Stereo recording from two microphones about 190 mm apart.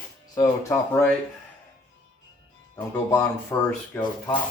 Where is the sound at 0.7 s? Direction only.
10° left (ahead or behind).